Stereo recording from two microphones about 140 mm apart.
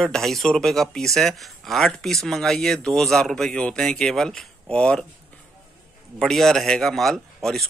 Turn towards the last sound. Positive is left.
turn(degrees=5)  # may be behind; listen again after turning